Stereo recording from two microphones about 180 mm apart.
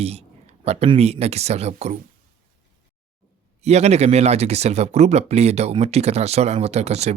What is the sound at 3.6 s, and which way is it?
Speech, 35° right (ahead or behind).